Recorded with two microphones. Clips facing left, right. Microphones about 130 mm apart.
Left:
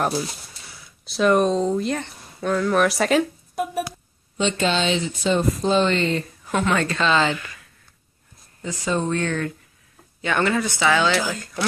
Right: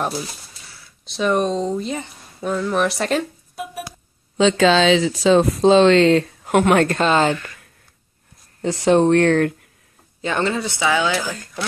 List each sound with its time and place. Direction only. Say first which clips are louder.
1.0 s speech: left 1 dB; centre (ahead or behind)
4.4 s speech: right 7 dB; 90° right; by 7.3 s 45° right (ahead or behind)
8.6 s speech: right 9 dB; 75° right (ahead or behind)
10.2 s speech: even; 25° right (ahead or behind)